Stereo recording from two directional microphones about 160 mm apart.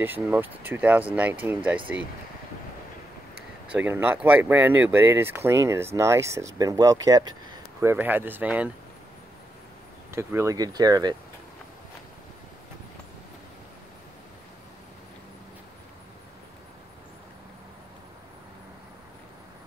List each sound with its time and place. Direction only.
0.0 s speech: 10° right (ahead or behind)
3.6 s speech: 10° right (ahead or behind)
10.1 s speech: 15° right (ahead or behind)